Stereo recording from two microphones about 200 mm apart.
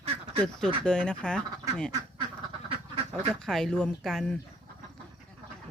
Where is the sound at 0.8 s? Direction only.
5° left (ahead or behind).